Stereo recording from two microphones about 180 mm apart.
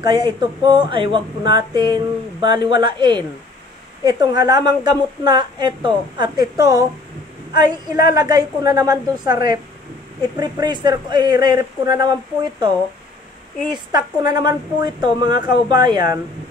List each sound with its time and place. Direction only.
0.0 s a woman's voice: 25° right (ahead or behind)